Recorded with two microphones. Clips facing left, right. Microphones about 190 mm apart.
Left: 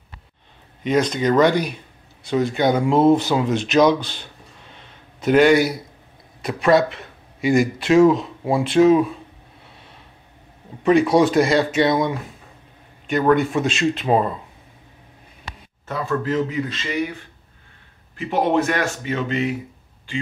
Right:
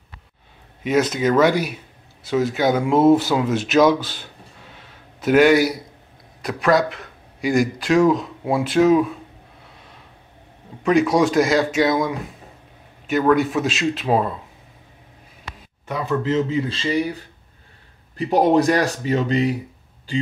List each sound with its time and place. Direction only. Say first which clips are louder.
0.8 s speech: even; 5° right (ahead or behind)
4.7 s a sound: even; 5° right (ahead or behind)
6.4 s speech: left 2 dB; centre (ahead or behind)
10.8 s speech: left 2 dB; centre (ahead or behind)
15.9 s speech: right 1 dB; 15° right (ahead or behind); by 20.2 s 40° right (ahead or behind)